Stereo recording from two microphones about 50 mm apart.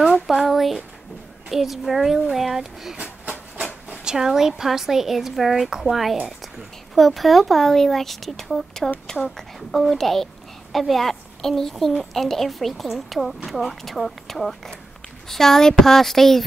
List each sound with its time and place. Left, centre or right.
0.0 s a sound: centre
1.5 s a woman's voice: centre
3.0 s train: right
3.9 s a woman's voice: centre
7.0 s a woman's voice: centre